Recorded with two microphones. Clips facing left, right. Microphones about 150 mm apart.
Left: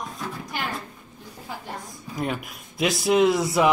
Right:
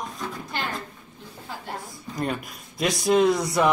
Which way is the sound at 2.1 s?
Centre (ahead or behind).